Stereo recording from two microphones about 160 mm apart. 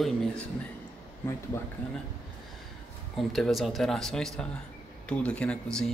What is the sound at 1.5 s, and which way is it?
Speech, 15° left (ahead or behind).